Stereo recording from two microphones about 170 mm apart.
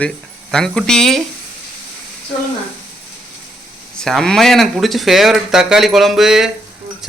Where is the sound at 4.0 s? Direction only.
5° left (ahead or behind).